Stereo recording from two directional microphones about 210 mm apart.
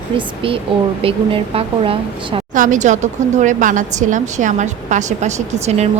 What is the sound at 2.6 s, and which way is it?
Speech, 35° right (ahead or behind).